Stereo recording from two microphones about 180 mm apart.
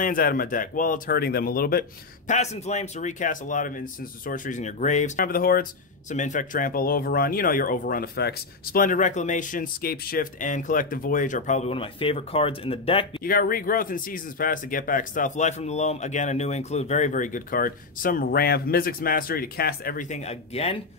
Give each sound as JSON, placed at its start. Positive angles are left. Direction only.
{"t": 0.0, "sound": "speech", "side_deg": 50}
{"t": 2.3, "sound": "speech", "side_deg": 40}
{"t": 13.2, "sound": "speech", "side_deg": 55}